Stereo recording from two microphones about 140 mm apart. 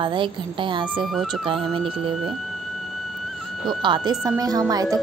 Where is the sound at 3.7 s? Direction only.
30° right (ahead or behind).